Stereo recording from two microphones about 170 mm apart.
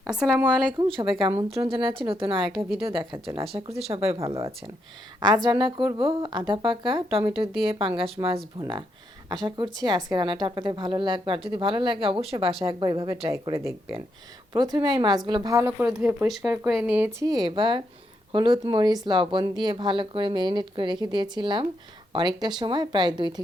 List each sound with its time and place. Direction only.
0.1 s speech: 5° right (ahead or behind)
0.8 s a woman's voice: 30° right (ahead or behind)
5.2 s a woman's voice: 25° right (ahead or behind)
13.3 s a woman's voice: 15° right (ahead or behind)
17.2 s a woman's voice: 20° right (ahead or behind)